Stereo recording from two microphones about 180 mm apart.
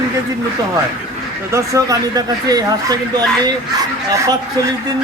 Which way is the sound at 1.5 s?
20° right (ahead or behind).